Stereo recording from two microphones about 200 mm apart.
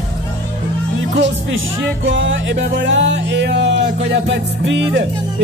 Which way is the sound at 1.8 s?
65° right (ahead or behind).